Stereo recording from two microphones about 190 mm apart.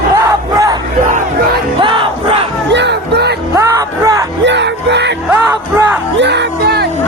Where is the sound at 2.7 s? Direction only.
65° right (ahead or behind).